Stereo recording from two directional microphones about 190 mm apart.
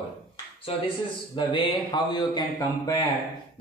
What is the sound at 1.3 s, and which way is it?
Speech, 25° left (ahead or behind).